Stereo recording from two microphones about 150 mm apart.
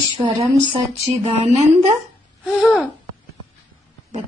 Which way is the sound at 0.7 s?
45° right (ahead or behind).